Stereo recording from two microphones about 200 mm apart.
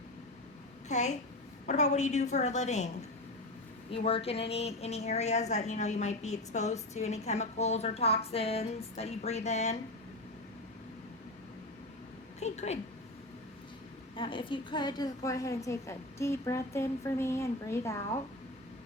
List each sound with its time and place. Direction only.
0.9 s a woman's voice: 35° left (ahead or behind)
3.9 s a woman's voice: 30° left (ahead or behind)
12.4 s a sound: 35° left (ahead or behind)
14.2 s a woman's voice: 25° left (ahead or behind)